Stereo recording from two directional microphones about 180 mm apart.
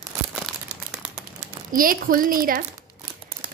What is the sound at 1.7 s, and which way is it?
Speech, 50° right (ahead or behind).